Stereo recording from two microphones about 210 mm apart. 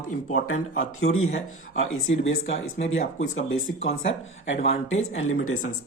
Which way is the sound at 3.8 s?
30° left (ahead or behind).